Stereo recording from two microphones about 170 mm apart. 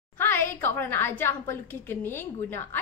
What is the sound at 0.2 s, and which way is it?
A woman's voice, 15° left (ahead or behind).